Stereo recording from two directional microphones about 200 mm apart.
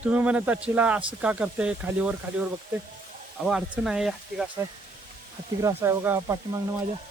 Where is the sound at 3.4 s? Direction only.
5° right (ahead or behind).